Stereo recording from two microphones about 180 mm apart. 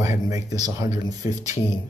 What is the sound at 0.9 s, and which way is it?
Speech, 20° right (ahead or behind).